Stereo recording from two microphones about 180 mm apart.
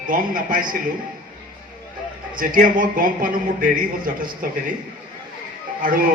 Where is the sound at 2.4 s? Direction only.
50° right (ahead or behind).